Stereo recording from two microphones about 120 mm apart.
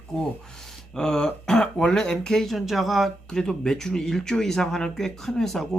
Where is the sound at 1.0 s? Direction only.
5° left (ahead or behind).